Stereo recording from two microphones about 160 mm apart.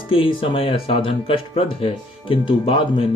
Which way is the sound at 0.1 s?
35° left (ahead or behind).